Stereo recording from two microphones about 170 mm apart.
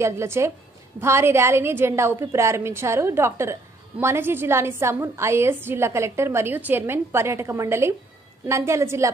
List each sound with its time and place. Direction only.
0.0 s a woman's voice: 15° right (ahead or behind)